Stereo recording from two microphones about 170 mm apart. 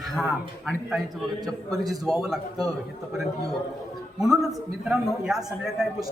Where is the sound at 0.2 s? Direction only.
5° right (ahead or behind).